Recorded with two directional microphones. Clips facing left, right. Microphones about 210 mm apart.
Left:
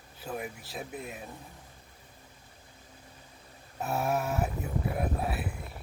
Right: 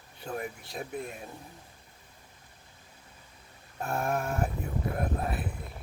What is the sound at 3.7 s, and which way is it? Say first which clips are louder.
Speech: left 1 dB; 5° left (ahead or behind).